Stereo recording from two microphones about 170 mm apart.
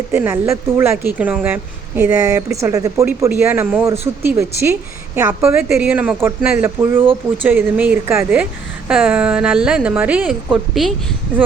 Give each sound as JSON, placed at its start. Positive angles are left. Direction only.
{"t": 0.1, "sound": "a woman's voice", "side_deg": -15}